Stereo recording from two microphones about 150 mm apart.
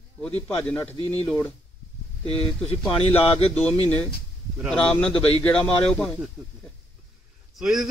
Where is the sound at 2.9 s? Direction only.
40° left (ahead or behind).